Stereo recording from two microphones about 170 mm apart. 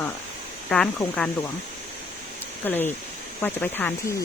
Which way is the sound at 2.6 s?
10° left (ahead or behind).